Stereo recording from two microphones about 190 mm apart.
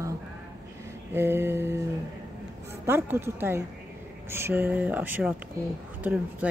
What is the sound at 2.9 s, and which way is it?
Speech, 10° right (ahead or behind).